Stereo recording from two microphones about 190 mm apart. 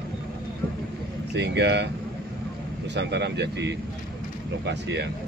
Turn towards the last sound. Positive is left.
turn(degrees=-65)  # may be behind; listen again after turning